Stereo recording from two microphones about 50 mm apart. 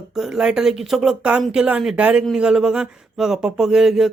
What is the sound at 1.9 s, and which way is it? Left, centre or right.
Speech, right.